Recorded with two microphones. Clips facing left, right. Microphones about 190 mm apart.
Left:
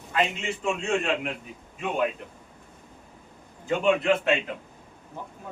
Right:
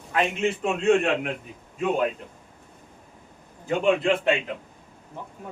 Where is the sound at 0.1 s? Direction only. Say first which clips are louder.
Right 3 dB; 60° right (ahead or behind).